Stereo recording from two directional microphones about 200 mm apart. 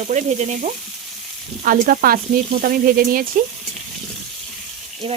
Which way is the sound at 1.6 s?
45° right (ahead or behind).